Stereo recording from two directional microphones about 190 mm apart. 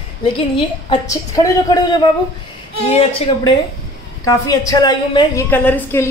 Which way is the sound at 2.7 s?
30° left (ahead or behind).